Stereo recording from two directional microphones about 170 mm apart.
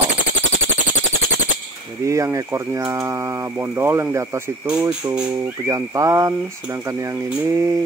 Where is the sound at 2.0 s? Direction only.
20° right (ahead or behind).